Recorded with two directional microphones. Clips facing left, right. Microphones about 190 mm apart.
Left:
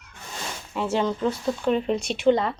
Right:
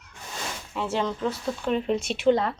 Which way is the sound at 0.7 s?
Centre (ahead or behind).